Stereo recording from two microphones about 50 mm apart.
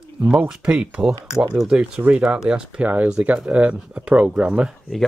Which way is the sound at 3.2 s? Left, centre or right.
Right.